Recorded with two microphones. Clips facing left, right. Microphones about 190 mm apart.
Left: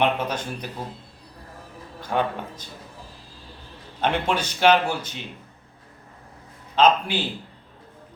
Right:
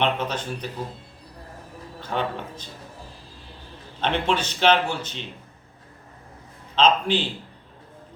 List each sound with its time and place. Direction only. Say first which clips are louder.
0.0 s a man's voice: left 1 dB; 10° left (ahead or behind)
2.0 s a man's voice: left 2 dB; 10° left (ahead or behind)
4.0 s a man's voice: even; 10° left (ahead or behind)
6.7 s a man's voice: left 1 dB; 10° left (ahead or behind)